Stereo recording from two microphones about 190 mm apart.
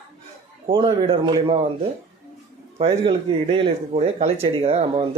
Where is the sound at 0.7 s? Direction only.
25° right (ahead or behind).